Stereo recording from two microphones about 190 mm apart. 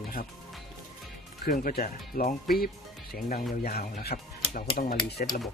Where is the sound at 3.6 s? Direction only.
50° left (ahead or behind).